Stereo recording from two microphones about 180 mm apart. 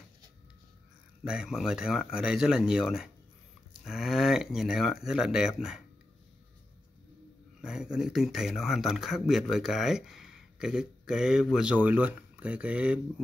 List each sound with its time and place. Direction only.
1.2 s speech: 5° right (ahead or behind)
7.6 s speech: 5° right (ahead or behind)